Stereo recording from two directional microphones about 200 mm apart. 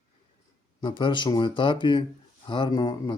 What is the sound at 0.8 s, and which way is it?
Speech, 25° left (ahead or behind).